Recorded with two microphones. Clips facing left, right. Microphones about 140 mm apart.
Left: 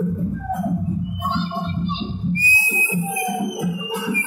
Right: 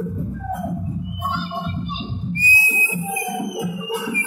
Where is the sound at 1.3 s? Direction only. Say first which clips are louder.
Left 2 dB; 25° left (ahead or behind).